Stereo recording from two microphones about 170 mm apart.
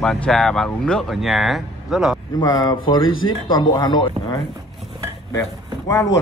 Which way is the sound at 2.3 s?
25° left (ahead or behind).